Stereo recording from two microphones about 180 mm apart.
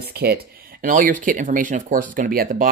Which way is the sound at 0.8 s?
50° right (ahead or behind).